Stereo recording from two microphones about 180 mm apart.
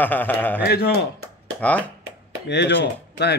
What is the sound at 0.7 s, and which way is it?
Speech, 60° left (ahead or behind).